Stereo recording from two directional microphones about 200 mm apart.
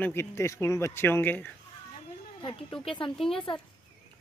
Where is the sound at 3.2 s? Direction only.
Centre (ahead or behind).